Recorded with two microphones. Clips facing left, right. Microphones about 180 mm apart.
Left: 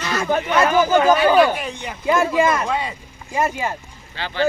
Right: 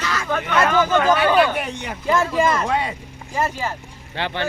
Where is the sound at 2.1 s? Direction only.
15° left (ahead or behind).